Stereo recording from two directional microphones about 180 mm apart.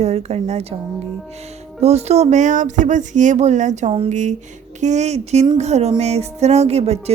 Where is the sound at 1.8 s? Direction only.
35° right (ahead or behind).